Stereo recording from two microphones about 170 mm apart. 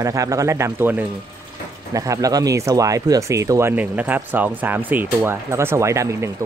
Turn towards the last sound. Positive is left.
turn(degrees=-15)  # may be behind; listen again after turning